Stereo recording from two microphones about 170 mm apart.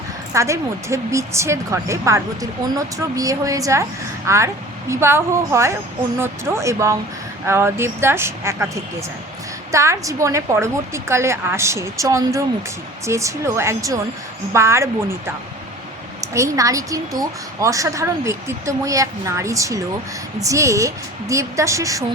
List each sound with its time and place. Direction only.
0.3 s a woman's voice: 15° right (ahead or behind)
16.2 s a woman's voice: 20° right (ahead or behind)